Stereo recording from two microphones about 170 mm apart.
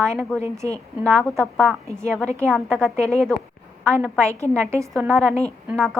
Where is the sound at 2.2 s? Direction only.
15° right (ahead or behind).